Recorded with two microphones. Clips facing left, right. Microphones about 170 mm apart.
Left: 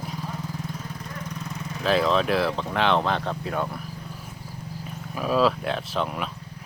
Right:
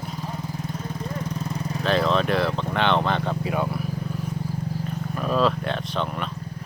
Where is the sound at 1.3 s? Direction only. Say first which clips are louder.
Right 5 dB; 35° right (ahead or behind).